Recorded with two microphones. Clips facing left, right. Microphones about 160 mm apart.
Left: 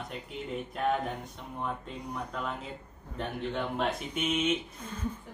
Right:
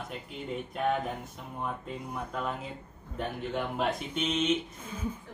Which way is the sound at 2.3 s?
5° right (ahead or behind).